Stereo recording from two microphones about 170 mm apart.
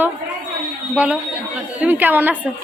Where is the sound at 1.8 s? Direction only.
10° right (ahead or behind).